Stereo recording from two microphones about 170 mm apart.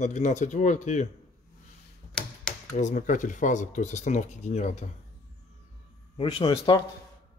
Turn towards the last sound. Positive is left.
turn(degrees=25)  # may be behind; listen again after turning